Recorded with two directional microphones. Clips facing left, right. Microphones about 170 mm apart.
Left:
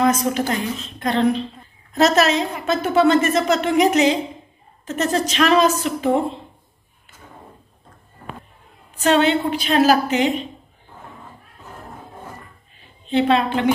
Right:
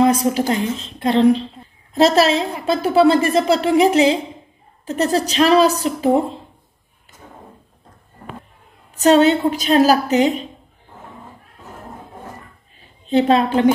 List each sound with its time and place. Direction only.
0.0 s a woman's voice: 30° right (ahead or behind)
8.9 s a woman's voice: 40° right (ahead or behind)
13.0 s a woman's voice: 40° right (ahead or behind)